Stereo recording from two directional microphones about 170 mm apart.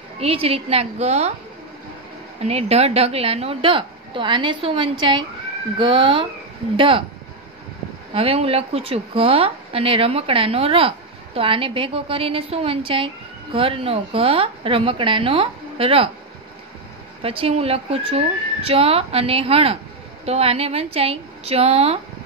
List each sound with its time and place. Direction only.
0.2 s speech: 35° right (ahead or behind)
2.4 s speech: 35° right (ahead or behind)
8.1 s speech: 35° right (ahead or behind)
17.2 s speech: 35° right (ahead or behind)